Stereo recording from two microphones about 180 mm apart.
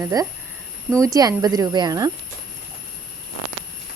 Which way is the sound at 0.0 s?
20° right (ahead or behind).